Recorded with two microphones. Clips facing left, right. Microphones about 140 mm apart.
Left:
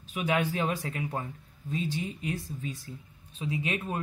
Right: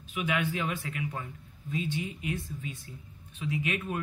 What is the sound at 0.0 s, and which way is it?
Speech, 40° left (ahead or behind).